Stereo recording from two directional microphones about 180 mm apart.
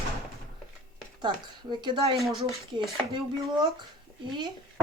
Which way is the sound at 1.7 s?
25° right (ahead or behind).